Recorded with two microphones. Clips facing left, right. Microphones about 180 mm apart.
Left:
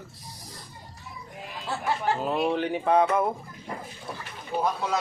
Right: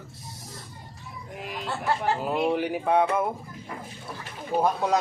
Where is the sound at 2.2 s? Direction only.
10° right (ahead or behind).